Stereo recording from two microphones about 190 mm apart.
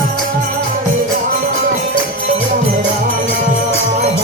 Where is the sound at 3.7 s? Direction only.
35° right (ahead or behind).